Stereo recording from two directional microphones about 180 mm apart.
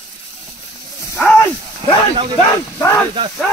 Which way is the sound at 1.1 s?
10° left (ahead or behind).